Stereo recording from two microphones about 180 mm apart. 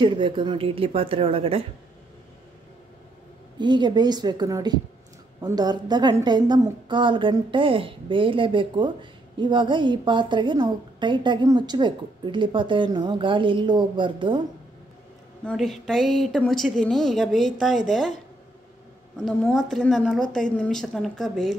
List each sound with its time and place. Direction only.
0.0 s a woman's voice: 25° right (ahead or behind)
3.5 s a woman's voice: 25° right (ahead or behind)
15.4 s a woman's voice: centre (ahead or behind)
19.1 s a woman's voice: 5° left (ahead or behind)